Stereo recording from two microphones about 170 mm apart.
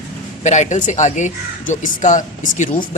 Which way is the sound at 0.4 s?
45° left (ahead or behind).